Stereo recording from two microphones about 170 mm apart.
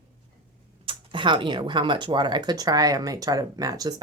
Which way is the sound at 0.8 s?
30° right (ahead or behind).